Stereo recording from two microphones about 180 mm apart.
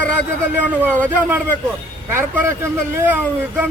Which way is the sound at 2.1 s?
15° right (ahead or behind).